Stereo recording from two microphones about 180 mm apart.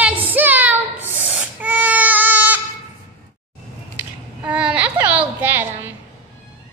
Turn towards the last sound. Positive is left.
turn(degrees=-10)  # may be behind; listen again after turning